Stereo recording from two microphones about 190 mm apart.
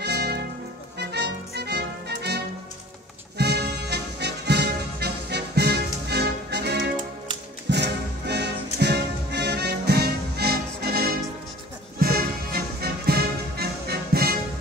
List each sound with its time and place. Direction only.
0.0 s music: 60° right (ahead or behind)